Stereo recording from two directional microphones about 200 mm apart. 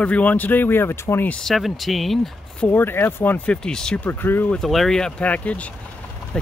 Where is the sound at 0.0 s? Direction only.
5° left (ahead or behind).